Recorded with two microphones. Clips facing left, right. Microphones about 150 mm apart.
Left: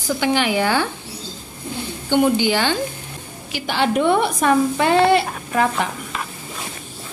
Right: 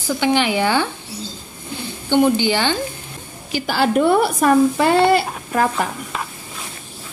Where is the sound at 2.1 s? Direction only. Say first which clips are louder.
Right 1 dB; 5° left (ahead or behind).